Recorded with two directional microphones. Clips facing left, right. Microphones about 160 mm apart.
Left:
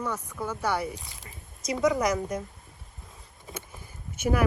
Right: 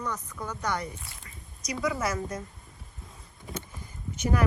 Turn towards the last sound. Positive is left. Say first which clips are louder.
# left 2 dB
turn(degrees=10)  # may be behind; listen again after turning